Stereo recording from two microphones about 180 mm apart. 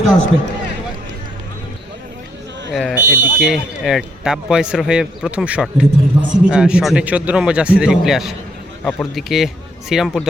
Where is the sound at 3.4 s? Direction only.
Centre (ahead or behind).